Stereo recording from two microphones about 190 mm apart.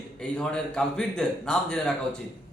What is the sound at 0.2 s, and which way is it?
A man's voice, 5° left (ahead or behind).